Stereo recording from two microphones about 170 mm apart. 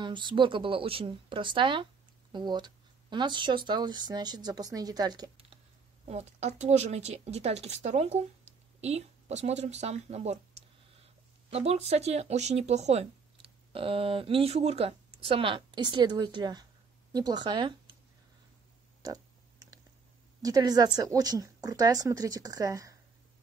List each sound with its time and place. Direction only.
0.0 s speech: 30° right (ahead or behind)
6.0 s speech: 40° right (ahead or behind)
11.5 s speech: 40° right (ahead or behind)
20.4 s speech: 20° right (ahead or behind)